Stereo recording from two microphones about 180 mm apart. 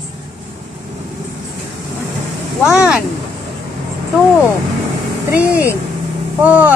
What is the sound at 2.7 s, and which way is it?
Speech, 5° right (ahead or behind).